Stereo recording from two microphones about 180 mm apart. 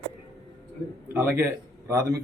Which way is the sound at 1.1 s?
15° right (ahead or behind).